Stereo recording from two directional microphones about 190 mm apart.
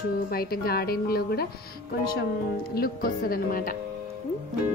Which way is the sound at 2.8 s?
50° left (ahead or behind).